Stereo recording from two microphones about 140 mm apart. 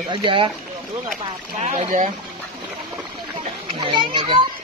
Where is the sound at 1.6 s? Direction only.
50° right (ahead or behind).